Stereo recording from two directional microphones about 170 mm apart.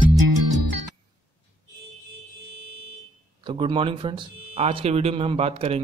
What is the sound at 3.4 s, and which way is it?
Speech, 30° right (ahead or behind).